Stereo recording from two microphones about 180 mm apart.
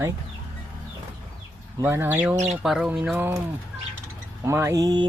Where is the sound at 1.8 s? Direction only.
15° right (ahead or behind).